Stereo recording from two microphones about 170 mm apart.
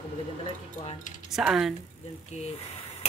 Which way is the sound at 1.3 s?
Centre (ahead or behind).